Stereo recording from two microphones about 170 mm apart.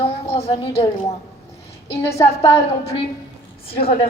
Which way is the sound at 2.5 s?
35° left (ahead or behind).